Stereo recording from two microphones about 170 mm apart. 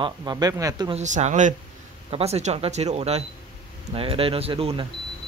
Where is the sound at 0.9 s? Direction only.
45° right (ahead or behind).